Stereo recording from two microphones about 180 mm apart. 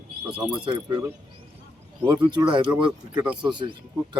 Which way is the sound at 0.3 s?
5° right (ahead or behind).